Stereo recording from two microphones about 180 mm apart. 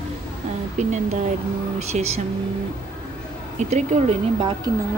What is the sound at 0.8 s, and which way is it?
A woman's voice, 40° right (ahead or behind).